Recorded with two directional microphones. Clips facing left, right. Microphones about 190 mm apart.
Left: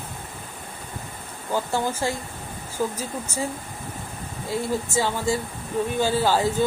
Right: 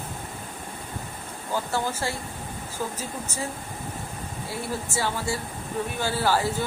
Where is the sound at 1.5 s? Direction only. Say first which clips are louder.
Left 3 dB; 15° left (ahead or behind).